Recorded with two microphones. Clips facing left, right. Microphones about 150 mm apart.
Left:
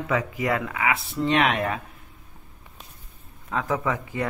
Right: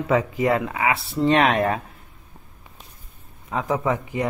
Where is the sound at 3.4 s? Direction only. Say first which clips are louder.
Right 3 dB; 20° right (ahead or behind).